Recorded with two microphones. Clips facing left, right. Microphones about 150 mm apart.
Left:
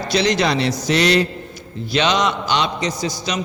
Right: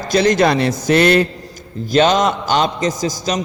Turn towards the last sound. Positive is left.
turn(degrees=-45)  # may be behind; listen again after turning